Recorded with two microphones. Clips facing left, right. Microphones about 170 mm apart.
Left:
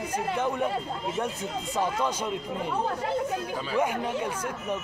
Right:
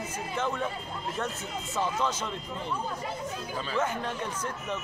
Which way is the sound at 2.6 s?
75° left (ahead or behind).